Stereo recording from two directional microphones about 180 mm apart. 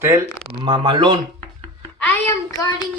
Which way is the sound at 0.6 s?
25° right (ahead or behind).